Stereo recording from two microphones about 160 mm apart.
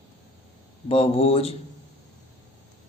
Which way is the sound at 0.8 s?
35° left (ahead or behind).